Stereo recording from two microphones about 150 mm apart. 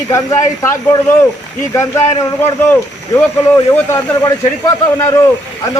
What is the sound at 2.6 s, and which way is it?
Speech, 15° left (ahead or behind).